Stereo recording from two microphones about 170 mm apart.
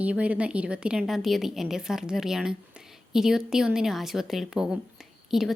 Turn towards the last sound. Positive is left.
turn(degrees=0)  # may be behind; listen again after turning